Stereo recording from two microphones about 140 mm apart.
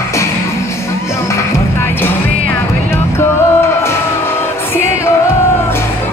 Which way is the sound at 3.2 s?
20° left (ahead or behind).